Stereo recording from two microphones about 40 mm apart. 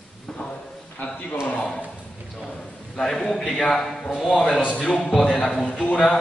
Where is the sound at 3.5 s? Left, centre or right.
Centre.